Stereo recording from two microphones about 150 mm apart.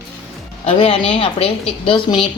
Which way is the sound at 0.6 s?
40° left (ahead or behind).